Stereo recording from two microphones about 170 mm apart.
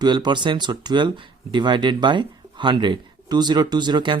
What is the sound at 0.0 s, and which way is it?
Speech, 25° right (ahead or behind).